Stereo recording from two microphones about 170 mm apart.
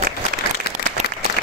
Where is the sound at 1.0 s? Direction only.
40° right (ahead or behind).